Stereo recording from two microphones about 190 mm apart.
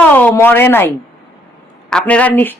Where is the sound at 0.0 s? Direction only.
10° left (ahead or behind).